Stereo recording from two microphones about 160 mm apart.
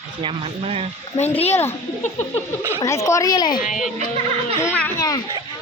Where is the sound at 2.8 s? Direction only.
20° left (ahead or behind).